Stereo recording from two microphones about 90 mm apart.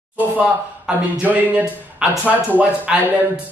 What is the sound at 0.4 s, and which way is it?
A man's voice, 10° right (ahead or behind).